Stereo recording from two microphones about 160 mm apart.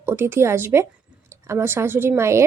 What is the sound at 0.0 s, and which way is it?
A woman's voice, 15° right (ahead or behind).